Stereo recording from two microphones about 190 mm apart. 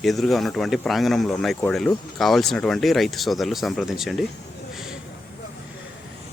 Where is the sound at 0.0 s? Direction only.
Centre (ahead or behind).